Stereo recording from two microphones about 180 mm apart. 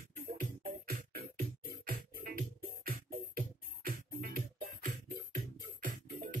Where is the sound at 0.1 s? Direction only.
55° right (ahead or behind).